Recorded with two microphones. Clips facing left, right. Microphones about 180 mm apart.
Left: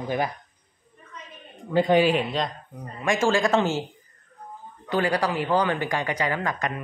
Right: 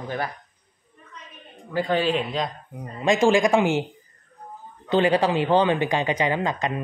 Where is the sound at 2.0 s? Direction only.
5° left (ahead or behind).